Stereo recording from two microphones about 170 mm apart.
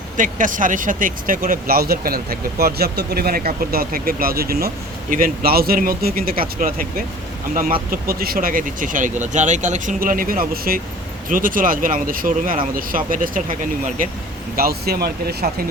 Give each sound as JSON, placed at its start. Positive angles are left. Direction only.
{"t": 0.2, "sound": "speech", "side_deg": -50}
{"t": 14.5, "sound": "speech", "side_deg": -60}